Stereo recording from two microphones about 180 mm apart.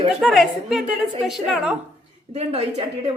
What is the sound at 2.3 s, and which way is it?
Speech, 35° right (ahead or behind).